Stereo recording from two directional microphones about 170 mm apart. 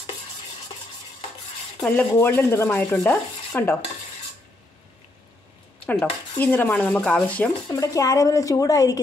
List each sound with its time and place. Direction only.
1.8 s chopping: 10° left (ahead or behind)
5.9 s chopping: 10° left (ahead or behind)
7.7 s a woman's voice: 20° left (ahead or behind)